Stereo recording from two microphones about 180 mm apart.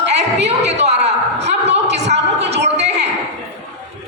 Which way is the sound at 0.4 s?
35° right (ahead or behind).